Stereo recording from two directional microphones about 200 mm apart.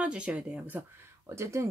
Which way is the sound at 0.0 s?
5° right (ahead or behind).